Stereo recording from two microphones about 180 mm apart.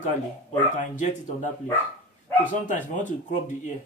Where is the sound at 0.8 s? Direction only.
45° left (ahead or behind).